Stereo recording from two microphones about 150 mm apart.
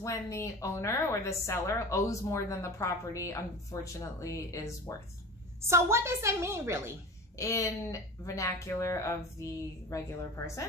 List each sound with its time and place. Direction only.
0.0 s a woman's voice: 20° left (ahead or behind)
5.7 s a woman's voice: 15° right (ahead or behind)
7.3 s a woman's voice: 20° left (ahead or behind)